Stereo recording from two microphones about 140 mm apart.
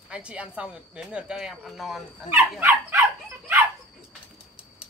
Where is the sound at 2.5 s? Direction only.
15° right (ahead or behind).